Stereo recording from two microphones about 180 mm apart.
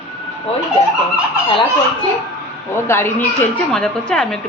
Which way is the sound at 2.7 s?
15° left (ahead or behind).